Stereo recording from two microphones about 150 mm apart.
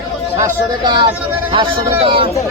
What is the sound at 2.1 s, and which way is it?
Speech, 35° right (ahead or behind).